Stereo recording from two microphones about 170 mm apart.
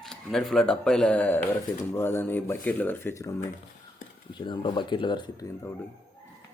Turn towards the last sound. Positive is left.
turn(degrees=15)  # may be behind; listen again after turning